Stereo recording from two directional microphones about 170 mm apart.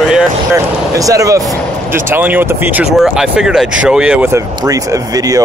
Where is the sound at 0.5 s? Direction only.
20° right (ahead or behind).